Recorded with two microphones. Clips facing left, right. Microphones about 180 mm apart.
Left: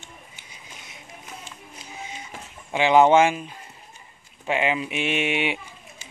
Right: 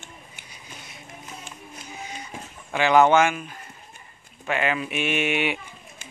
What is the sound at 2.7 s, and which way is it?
Speech, 25° left (ahead or behind).